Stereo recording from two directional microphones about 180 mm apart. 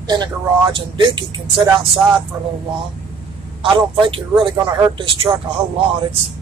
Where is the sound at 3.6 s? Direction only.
30° right (ahead or behind).